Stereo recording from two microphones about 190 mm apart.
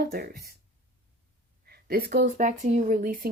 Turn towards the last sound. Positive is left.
turn(degrees=-45)  # may be behind; listen again after turning